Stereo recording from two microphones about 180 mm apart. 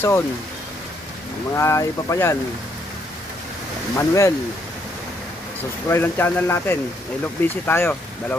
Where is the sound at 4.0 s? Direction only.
15° left (ahead or behind).